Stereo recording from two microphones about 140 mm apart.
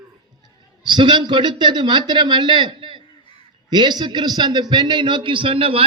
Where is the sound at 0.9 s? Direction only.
35° right (ahead or behind).